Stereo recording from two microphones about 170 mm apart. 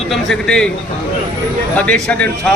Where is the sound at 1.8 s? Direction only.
5° left (ahead or behind).